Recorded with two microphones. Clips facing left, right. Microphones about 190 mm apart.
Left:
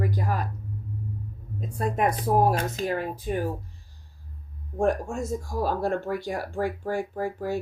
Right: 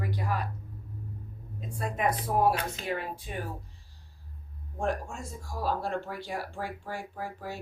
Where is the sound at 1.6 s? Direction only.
40° left (ahead or behind).